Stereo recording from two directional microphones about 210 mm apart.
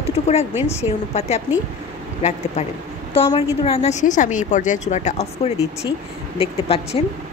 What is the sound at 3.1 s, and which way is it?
A woman's voice, 25° left (ahead or behind).